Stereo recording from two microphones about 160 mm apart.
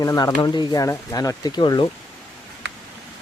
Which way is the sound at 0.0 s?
20° left (ahead or behind).